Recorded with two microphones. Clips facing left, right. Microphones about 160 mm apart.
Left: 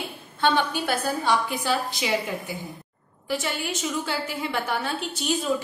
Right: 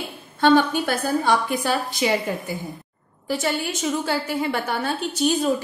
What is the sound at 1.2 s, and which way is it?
Speech, 50° right (ahead or behind).